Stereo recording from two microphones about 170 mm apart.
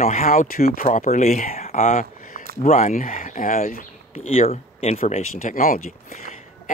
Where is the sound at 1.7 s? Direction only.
50° left (ahead or behind).